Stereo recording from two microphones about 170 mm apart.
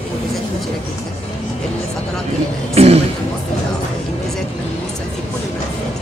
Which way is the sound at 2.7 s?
35° right (ahead or behind).